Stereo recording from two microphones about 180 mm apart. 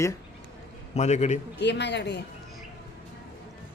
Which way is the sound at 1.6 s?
75° left (ahead or behind).